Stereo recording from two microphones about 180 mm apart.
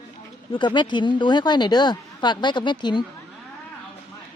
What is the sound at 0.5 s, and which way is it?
Speech, 25° left (ahead or behind).